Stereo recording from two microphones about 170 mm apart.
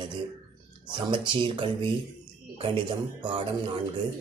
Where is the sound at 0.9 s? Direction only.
30° right (ahead or behind).